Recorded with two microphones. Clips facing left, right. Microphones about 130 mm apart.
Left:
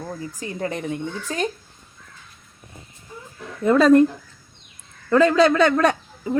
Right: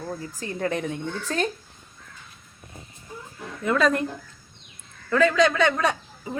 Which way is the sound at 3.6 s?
35° left (ahead or behind).